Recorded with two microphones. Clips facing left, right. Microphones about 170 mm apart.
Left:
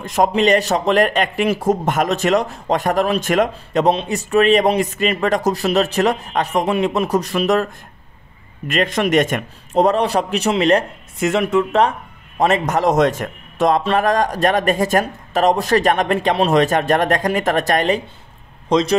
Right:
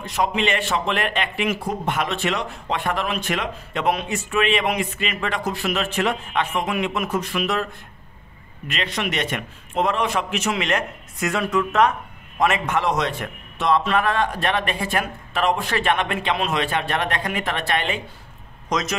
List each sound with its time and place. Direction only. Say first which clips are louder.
0.0 s a man's voice: left 7 dB; 45° left (ahead or behind)
8.6 s a man's voice: left 9 dB; 50° left (ahead or behind)
18.7 s a man's voice: left 9 dB; 30° left (ahead or behind)